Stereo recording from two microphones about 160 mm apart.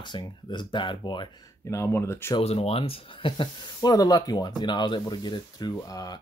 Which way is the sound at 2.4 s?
40° left (ahead or behind).